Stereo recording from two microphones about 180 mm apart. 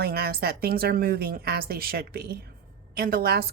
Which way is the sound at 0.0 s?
60° right (ahead or behind).